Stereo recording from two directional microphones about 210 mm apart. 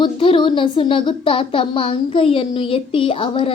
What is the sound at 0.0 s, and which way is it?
Speech, 25° left (ahead or behind).